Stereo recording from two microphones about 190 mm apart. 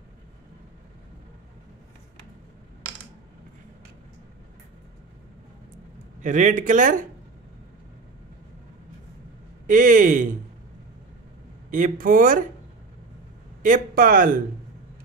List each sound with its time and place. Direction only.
6.2 s speech: 40° right (ahead or behind)
9.7 s speech: 45° right (ahead or behind)
11.7 s speech: 45° right (ahead or behind)
13.6 s speech: 45° right (ahead or behind)